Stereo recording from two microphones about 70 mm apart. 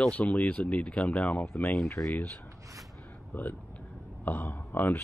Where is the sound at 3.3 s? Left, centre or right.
Left.